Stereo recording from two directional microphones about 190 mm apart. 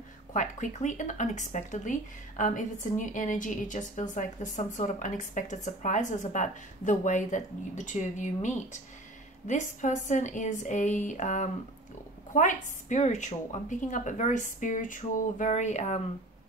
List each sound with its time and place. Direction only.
0.3 s speech: 40° left (ahead or behind)